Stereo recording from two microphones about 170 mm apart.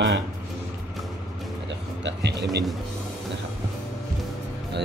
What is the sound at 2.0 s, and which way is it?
Speech, 90° right.